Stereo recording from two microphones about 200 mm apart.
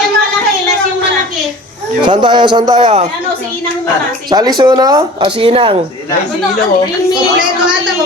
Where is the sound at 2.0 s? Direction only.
20° right (ahead or behind).